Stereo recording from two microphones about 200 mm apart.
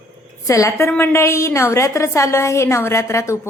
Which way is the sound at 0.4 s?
15° left (ahead or behind).